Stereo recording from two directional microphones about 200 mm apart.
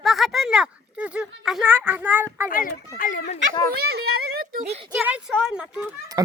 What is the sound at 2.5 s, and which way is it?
Speech, 45° left (ahead or behind).